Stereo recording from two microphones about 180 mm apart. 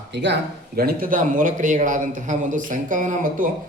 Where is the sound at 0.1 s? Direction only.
75° right (ahead or behind).